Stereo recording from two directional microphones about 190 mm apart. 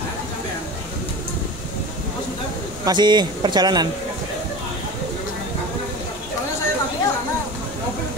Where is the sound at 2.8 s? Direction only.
25° right (ahead or behind).